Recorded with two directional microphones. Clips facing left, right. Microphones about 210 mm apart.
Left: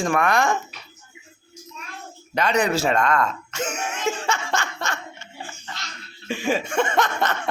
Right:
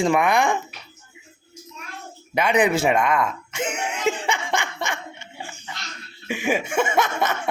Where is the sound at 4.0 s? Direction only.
20° right (ahead or behind).